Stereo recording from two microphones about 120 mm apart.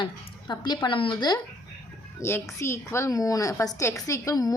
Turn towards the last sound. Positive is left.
turn(degrees=30)  # may be behind; listen again after turning